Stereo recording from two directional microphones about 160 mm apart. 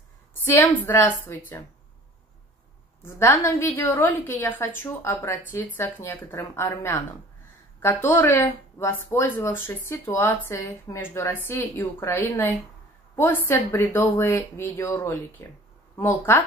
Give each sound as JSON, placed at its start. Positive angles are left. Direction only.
{"t": 0.8, "sound": "speech", "side_deg": 10}
{"t": 3.0, "sound": "speech", "side_deg": 15}